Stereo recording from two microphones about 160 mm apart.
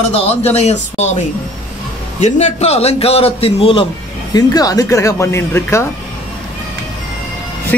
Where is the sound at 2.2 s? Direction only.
45° left (ahead or behind).